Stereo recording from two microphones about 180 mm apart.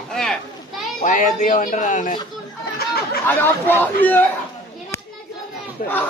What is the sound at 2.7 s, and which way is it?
Chatter, 60° left (ahead or behind).